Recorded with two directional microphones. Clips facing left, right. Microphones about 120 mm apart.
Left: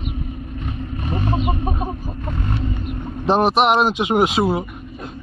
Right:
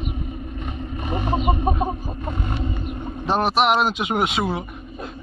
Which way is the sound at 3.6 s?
35° left (ahead or behind).